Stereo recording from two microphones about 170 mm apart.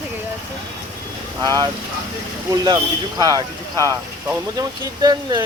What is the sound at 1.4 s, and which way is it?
Speech, 20° right (ahead or behind).